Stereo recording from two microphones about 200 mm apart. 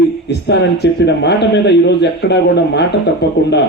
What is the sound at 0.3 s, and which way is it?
A man's voice, 60° left (ahead or behind).